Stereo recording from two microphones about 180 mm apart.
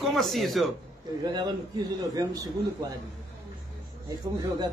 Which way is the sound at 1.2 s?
25° right (ahead or behind).